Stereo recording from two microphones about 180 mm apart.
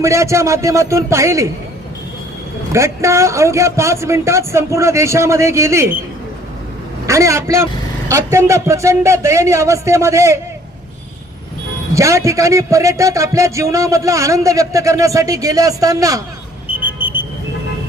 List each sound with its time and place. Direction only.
0.0 s a man's voice: 15° right (ahead or behind)
2.7 s a man's voice: 15° right (ahead or behind)
7.1 s a man's voice: 15° right (ahead or behind)
11.9 s a man's voice: 15° right (ahead or behind)
16.8 s a sound: 10° right (ahead or behind)